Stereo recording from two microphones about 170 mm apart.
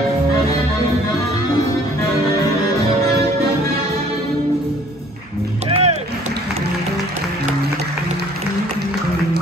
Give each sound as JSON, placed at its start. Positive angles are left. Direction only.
{"t": 5.7, "sound": "music", "side_deg": -40}